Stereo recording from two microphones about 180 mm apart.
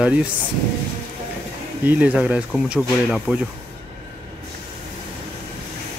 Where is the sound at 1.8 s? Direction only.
10° right (ahead or behind).